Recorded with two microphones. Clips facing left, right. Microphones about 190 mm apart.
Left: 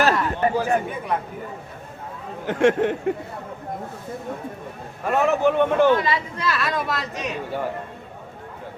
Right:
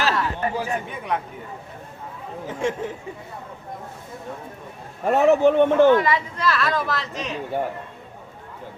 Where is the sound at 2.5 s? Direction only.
80° left.